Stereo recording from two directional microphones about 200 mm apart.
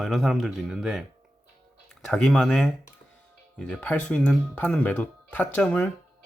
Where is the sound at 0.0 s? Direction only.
Centre (ahead or behind).